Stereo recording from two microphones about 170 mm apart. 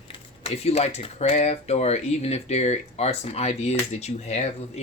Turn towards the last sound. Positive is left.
turn(degrees=40)  # may be behind; listen again after turning